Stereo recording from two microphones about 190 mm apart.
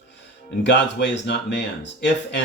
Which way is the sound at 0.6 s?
70° left (ahead or behind).